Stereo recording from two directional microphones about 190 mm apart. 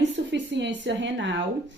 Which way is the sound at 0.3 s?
70° right (ahead or behind).